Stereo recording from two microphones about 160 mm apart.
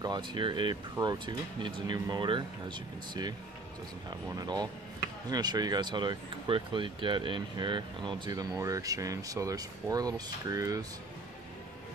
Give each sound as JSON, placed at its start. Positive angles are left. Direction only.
{"t": 0.0, "sound": "speech", "side_deg": -30}